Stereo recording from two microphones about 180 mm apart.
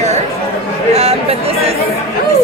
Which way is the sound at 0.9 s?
35° right (ahead or behind).